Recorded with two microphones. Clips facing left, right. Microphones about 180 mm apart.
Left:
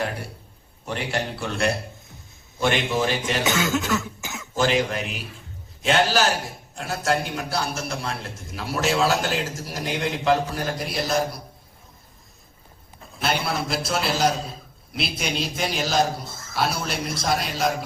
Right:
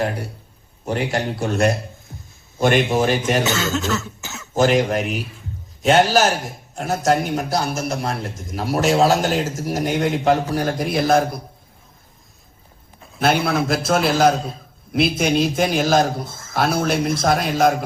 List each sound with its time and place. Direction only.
0.0 s a man's voice: 40° right (ahead or behind)
3.4 s cough: 10° left (ahead or behind)
4.5 s a man's voice: 45° right (ahead or behind)
13.2 s a man's voice: 50° right (ahead or behind)
14.3 s a man's voice: centre (ahead or behind)
14.9 s a man's voice: 50° right (ahead or behind)